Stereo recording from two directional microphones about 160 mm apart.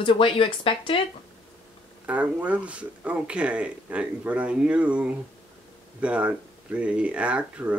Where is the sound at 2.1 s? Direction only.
10° right (ahead or behind).